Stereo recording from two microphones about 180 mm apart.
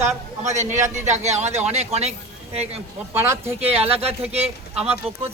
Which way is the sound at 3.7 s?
35° right (ahead or behind).